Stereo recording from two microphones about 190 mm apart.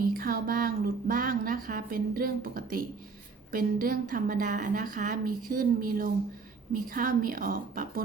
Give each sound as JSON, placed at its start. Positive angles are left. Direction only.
{"t": 0.0, "sound": "a woman's voice", "side_deg": -50}